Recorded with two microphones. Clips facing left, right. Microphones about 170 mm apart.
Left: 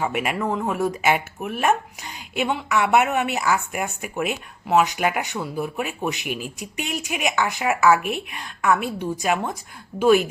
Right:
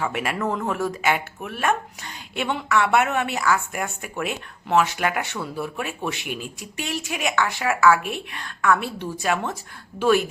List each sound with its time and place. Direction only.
0.0 s a woman's voice: 15° left (ahead or behind)